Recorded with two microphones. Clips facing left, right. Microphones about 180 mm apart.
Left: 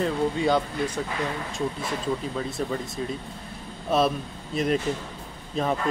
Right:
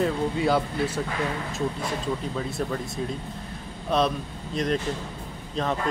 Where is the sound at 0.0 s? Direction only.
5° right (ahead or behind).